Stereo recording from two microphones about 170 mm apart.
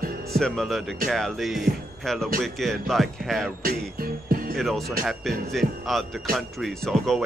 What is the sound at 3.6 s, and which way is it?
Music, 60° right (ahead or behind).